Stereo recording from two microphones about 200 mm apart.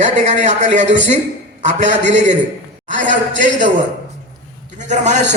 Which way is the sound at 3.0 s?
65° right (ahead or behind).